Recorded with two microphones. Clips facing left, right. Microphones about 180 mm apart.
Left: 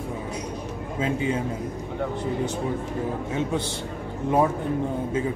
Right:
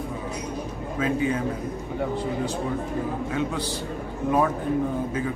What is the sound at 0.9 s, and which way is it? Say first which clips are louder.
Speech: right 1 dB; 25° left (ahead or behind).